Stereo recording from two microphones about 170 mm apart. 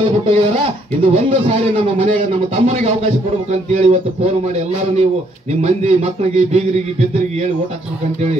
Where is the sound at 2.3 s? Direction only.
40° right (ahead or behind).